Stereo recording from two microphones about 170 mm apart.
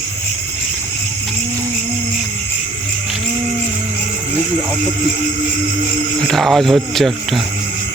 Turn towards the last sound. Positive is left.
turn(degrees=0)  # may be behind; listen again after turning